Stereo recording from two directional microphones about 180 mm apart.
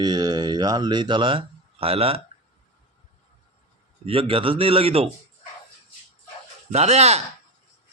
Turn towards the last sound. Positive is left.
turn(degrees=-35)  # may be behind; listen again after turning